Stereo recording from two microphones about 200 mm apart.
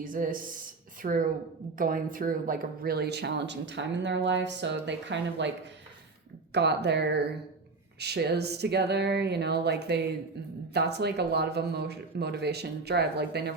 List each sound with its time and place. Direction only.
0.0 s a woman's voice: 45° right (ahead or behind); by 5.5 s 65° right (ahead or behind)
6.5 s speech: 55° right (ahead or behind)